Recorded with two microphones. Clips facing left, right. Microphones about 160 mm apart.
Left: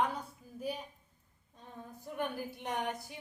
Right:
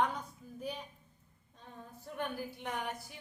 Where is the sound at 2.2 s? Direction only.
15° left (ahead or behind).